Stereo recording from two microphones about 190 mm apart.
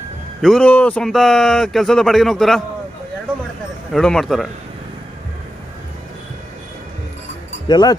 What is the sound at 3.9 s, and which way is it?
Speech, 5° left (ahead or behind).